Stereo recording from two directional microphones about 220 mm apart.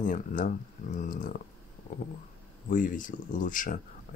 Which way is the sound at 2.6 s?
35° left (ahead or behind).